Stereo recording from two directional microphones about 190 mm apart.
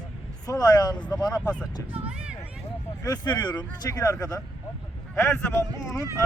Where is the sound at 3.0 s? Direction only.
20° left (ahead or behind).